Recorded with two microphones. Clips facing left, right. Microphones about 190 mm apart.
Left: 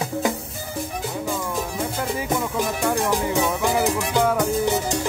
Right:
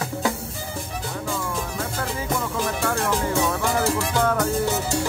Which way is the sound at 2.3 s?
15° left (ahead or behind).